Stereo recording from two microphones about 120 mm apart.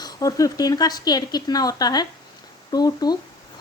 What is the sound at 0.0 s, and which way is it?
Speech, 30° left (ahead or behind).